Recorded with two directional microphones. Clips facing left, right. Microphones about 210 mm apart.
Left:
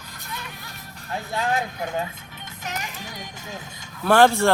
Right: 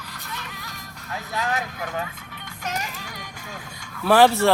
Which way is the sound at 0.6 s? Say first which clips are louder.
Right 1 dB; 30° left (ahead or behind).